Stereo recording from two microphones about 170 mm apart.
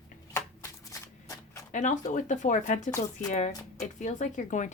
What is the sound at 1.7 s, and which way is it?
Speech, 45° left (ahead or behind).